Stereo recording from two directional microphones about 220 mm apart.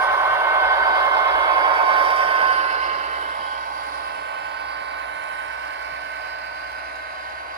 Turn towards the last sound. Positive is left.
turn(degrees=-55)  # may be behind; listen again after turning